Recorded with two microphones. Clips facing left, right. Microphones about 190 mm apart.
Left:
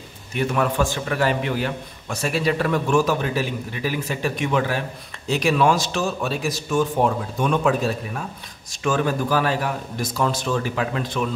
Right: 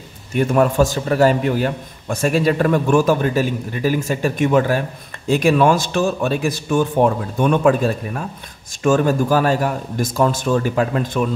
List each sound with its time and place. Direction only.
0.5 s a man's voice: 40° right (ahead or behind)